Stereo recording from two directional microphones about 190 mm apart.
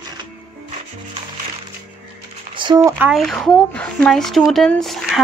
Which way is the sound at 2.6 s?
25° right (ahead or behind).